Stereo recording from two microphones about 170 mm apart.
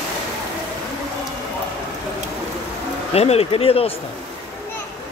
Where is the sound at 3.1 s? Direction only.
35° left (ahead or behind).